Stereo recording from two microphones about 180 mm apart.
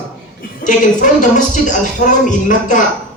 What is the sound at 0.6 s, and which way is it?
Speech, 45° left (ahead or behind).